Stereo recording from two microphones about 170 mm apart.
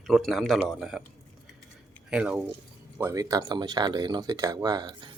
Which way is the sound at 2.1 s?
5° right (ahead or behind).